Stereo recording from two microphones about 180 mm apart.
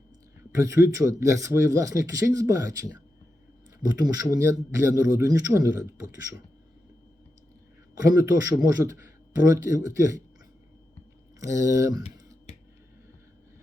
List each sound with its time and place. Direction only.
0.5 s speech: 15° right (ahead or behind)
3.8 s speech: 20° right (ahead or behind)
7.9 s speech: 20° right (ahead or behind)
11.3 s speech: 15° right (ahead or behind)
12.5 s finger snapping: 35° left (ahead or behind)